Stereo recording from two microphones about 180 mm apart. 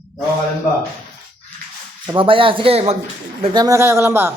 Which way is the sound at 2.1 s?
30° right (ahead or behind).